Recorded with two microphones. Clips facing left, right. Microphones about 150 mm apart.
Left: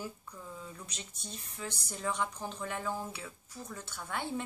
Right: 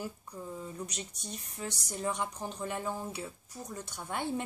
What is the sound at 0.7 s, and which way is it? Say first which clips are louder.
A woman's voice: right 7 dB; 15° right (ahead or behind).